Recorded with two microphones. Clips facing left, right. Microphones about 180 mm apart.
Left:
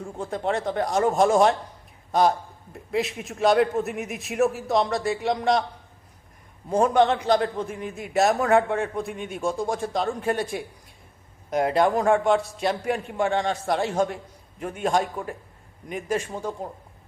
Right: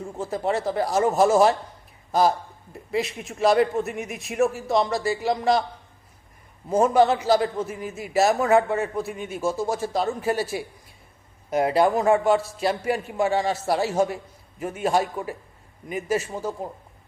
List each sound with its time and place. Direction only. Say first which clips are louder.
0.0 s a man's voice: right 1 dB; 5° right (ahead or behind)
6.7 s a man's voice: right 1 dB; 5° right (ahead or behind)